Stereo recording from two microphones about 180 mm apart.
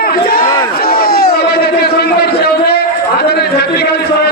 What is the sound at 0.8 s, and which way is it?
Battle cry, 55° left (ahead or behind).